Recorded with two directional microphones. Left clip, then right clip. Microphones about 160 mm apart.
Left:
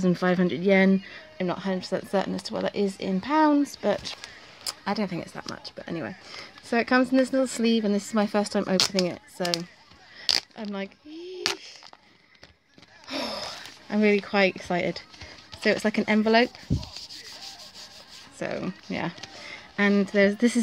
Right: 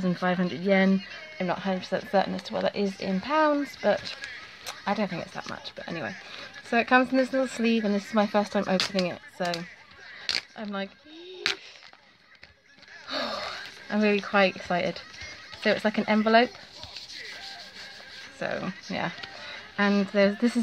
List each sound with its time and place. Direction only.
0.0 s speech: 45° left (ahead or behind); by 8.7 s 30° left (ahead or behind)
8.7 s speech: 15° left (ahead or behind)
10.2 s zipper: 20° left (ahead or behind)
13.1 s a sound: 25° left (ahead or behind)
15.6 s speech: 35° left (ahead or behind)
18.4 s speech: 30° left (ahead or behind)